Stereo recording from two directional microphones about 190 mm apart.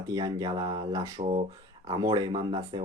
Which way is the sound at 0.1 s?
20° right (ahead or behind).